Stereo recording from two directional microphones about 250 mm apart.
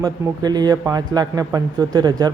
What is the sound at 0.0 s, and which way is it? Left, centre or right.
Speech, centre.